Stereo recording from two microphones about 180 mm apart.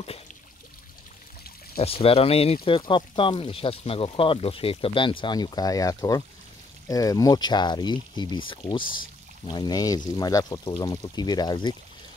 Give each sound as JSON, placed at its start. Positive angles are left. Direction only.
{"t": 1.8, "sound": "speech", "side_deg": 35}